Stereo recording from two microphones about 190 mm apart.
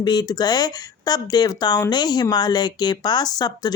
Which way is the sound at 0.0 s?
20° left (ahead or behind).